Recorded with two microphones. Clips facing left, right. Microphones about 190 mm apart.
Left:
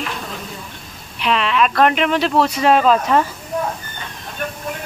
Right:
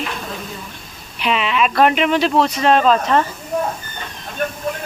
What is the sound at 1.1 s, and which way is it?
Speech, 5° right (ahead or behind).